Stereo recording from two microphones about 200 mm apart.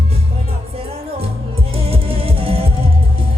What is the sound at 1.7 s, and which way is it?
Music, 30° right (ahead or behind).